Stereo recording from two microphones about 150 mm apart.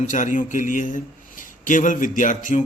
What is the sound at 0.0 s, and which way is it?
A man's voice, 55° left (ahead or behind).